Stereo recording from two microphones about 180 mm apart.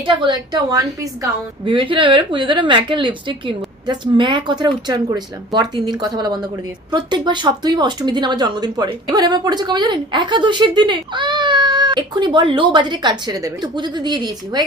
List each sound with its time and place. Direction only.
0.0 s speech: 25° right (ahead or behind)